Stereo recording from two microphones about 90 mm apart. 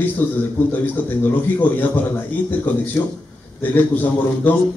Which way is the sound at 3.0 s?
25° left (ahead or behind).